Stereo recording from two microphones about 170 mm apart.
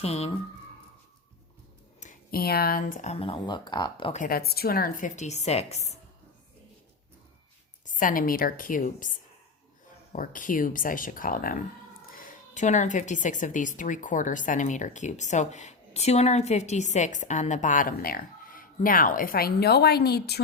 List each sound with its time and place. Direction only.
0.0 s speech: 35° left (ahead or behind)
2.3 s speech: 65° left (ahead or behind); by 4.1 s 25° left (ahead or behind)
4.1 s speech: 55° left (ahead or behind); by 6.0 s 40° left (ahead or behind)
7.9 s speech: 55° left (ahead or behind); by 20.4 s 70° left (ahead or behind)